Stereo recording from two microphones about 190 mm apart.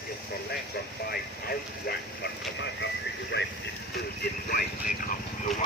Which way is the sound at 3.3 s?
65° left (ahead or behind).